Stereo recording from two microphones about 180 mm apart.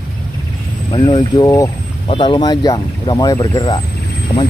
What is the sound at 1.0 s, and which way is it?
Speech, 25° left (ahead or behind).